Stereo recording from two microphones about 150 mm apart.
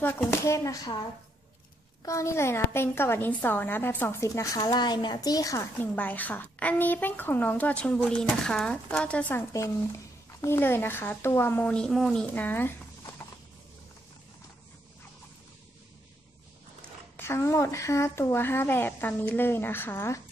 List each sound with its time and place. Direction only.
0.0 s a woman's voice: 15° left (ahead or behind)
2.0 s a woman's voice: 20° left (ahead or behind)
5.9 s a woman's voice: 10° left (ahead or behind)
9.5 s a woman's voice: 20° left (ahead or behind)
17.2 s a woman's voice: 15° left (ahead or behind)